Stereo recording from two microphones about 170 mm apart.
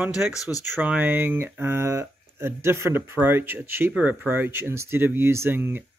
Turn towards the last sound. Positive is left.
turn(degrees=-10)  # may be behind; listen again after turning